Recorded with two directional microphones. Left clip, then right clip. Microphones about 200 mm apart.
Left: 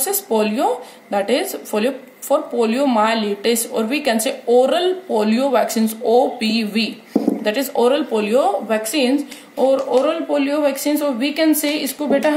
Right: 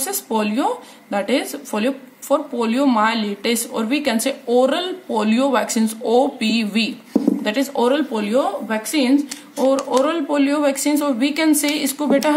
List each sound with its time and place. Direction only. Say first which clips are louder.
0.0 s a woman's voice: left 3 dB; 10° right (ahead or behind)